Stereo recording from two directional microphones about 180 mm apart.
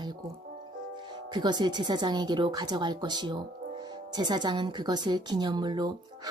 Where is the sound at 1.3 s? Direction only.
25° right (ahead or behind).